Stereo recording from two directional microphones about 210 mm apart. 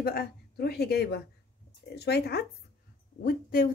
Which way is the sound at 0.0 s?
45° left (ahead or behind).